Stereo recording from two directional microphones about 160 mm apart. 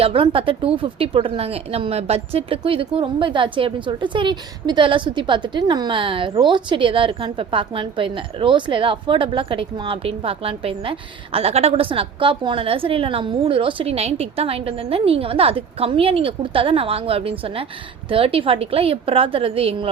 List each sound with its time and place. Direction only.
0.0 s a woman's voice: 35° right (ahead or behind)